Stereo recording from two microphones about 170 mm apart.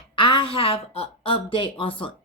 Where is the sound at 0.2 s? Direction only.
30° left (ahead or behind).